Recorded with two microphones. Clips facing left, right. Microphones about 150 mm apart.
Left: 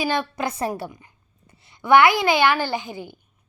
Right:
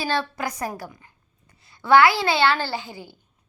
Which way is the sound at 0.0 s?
15° left (ahead or behind).